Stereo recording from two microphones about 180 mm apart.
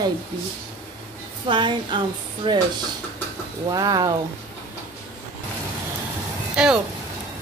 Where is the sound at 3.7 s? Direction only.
20° right (ahead or behind).